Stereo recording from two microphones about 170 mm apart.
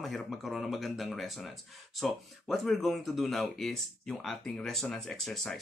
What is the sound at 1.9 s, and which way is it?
Speech, centre (ahead or behind).